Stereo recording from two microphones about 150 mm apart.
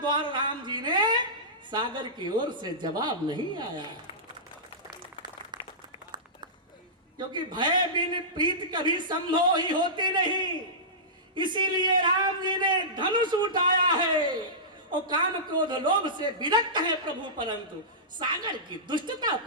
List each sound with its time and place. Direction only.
0.0 s a sound: 30° right (ahead or behind)
1.7 s a woman's voice: 30° right (ahead or behind)
7.2 s a man's voice: 30° right (ahead or behind)